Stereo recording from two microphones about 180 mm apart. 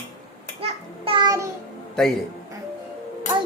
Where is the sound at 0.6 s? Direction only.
30° right (ahead or behind).